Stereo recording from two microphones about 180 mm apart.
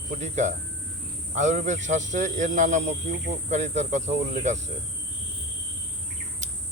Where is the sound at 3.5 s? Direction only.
40° right (ahead or behind).